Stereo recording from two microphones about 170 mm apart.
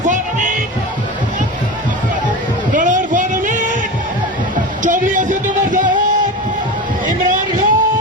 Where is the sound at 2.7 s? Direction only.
50° right (ahead or behind).